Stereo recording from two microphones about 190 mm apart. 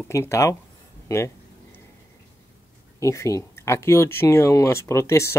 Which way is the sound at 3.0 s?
15° left (ahead or behind).